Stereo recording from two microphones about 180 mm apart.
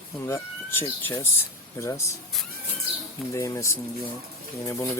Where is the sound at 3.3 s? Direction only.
15° left (ahead or behind).